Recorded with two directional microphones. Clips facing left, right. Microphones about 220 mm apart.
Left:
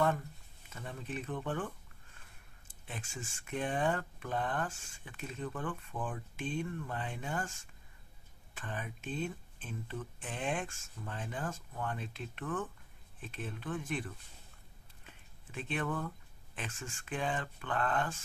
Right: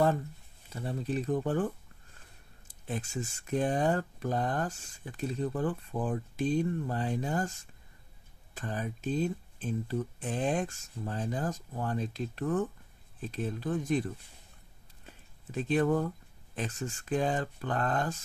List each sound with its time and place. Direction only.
0.7 s speech: 35° right (ahead or behind)
2.7 s speech: 40° right (ahead or behind)
15.0 s a sound: 40° right (ahead or behind)
16.5 s speech: 40° right (ahead or behind)